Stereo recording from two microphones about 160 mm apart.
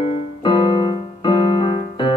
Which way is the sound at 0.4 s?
30° left (ahead or behind).